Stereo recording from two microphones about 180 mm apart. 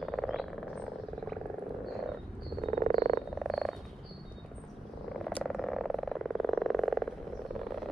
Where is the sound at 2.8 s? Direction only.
50° right (ahead or behind).